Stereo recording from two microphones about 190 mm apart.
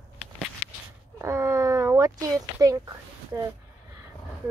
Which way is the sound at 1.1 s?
15° right (ahead or behind).